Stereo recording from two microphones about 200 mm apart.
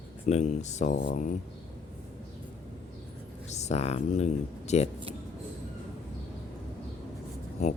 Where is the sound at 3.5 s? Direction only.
35° left (ahead or behind).